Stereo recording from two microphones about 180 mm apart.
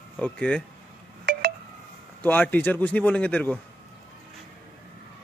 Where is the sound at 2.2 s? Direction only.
10° left (ahead or behind).